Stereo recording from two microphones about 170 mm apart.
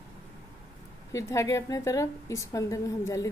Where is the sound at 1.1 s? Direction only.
20° left (ahead or behind).